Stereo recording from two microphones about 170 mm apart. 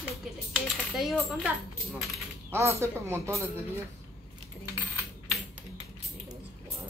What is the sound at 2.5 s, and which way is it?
Speech, 15° right (ahead or behind).